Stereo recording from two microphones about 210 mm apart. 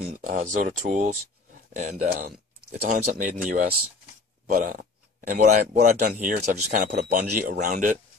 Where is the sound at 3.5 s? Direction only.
35° right (ahead or behind).